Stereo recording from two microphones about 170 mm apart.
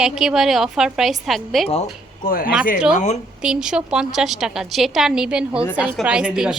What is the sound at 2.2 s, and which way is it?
Speech, 55° left (ahead or behind).